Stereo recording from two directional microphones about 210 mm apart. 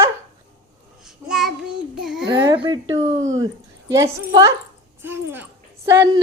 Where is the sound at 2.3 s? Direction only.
20° right (ahead or behind).